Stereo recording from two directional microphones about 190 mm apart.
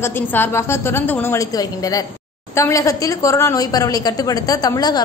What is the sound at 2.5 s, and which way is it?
A woman's voice, 15° left (ahead or behind).